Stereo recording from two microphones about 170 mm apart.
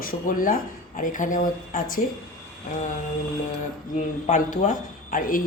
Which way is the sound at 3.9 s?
50° left (ahead or behind).